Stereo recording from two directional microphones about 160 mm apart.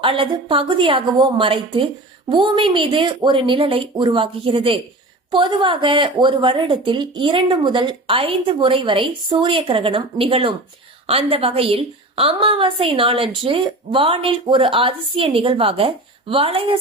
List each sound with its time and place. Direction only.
0.0 s a woman's voice: 30° right (ahead or behind)